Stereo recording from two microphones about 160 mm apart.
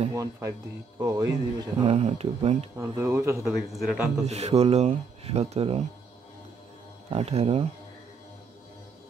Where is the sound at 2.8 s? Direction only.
20° right (ahead or behind).